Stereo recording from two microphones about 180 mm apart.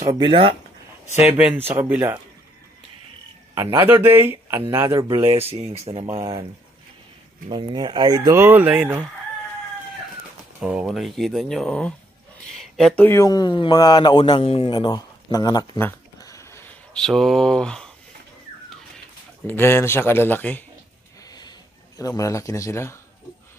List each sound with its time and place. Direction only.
0.0 s speech: 20° right (ahead or behind)
1.5 s speech: 10° right (ahead or behind)
3.8 s speech: 10° right (ahead or behind)
5.1 s speech: 30° right (ahead or behind)
6.1 s speech: 20° right (ahead or behind)
7.4 s speech: 25° right (ahead or behind); by 9.0 s 10° right (ahead or behind)
10.6 s speech: 5° right (ahead or behind)
19.4 s speech: 10° left (ahead or behind)
21.3 s a sound: 20° left (ahead or behind)